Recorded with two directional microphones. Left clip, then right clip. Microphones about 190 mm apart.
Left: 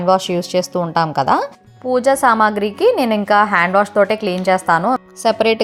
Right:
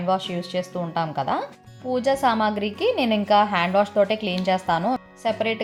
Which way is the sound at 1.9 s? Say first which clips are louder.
Left 8 dB; 30° left (ahead or behind).